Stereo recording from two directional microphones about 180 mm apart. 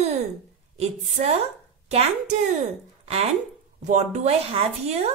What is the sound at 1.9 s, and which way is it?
Speech, 35° right (ahead or behind).